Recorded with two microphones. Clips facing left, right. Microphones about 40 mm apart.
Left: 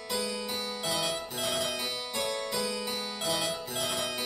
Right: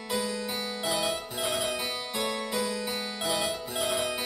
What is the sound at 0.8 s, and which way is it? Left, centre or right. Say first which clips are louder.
Harpsichord: right 3 dB; centre.